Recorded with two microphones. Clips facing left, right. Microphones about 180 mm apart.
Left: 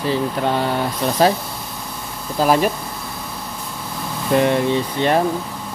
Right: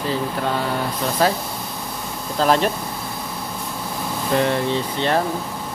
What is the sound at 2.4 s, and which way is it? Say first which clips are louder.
Speech: left 2 dB; 10° left (ahead or behind).